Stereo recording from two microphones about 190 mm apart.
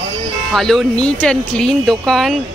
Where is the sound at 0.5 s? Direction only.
Centre (ahead or behind).